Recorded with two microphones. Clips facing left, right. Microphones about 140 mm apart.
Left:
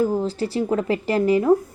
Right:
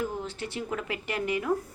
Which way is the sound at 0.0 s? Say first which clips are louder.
Left 11 dB; 35° left (ahead or behind).